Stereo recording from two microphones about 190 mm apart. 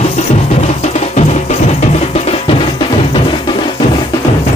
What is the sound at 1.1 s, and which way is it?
Music, 35° left (ahead or behind).